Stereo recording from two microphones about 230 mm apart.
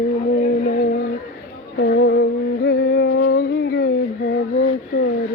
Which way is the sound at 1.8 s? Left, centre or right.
Left.